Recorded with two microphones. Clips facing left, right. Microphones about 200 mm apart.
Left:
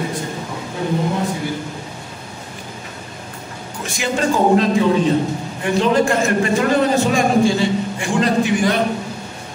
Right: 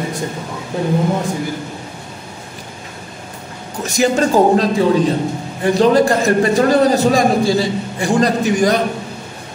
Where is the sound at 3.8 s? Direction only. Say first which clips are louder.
Right 5 dB; 40° right (ahead or behind).